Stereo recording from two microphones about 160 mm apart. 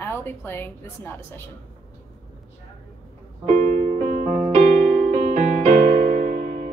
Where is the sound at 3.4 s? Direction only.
50° right (ahead or behind).